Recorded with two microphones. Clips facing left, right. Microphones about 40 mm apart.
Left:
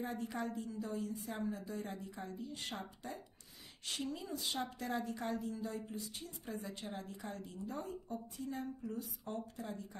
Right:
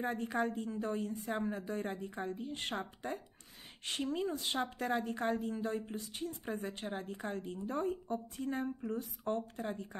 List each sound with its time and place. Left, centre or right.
0.0 s a woman's voice: right